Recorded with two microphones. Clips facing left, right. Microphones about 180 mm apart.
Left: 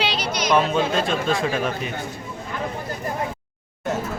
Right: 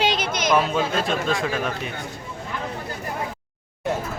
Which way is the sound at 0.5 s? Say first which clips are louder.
Left 2 dB; centre (ahead or behind).